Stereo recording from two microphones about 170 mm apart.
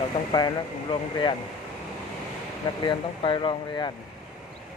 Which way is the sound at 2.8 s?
30° left (ahead or behind).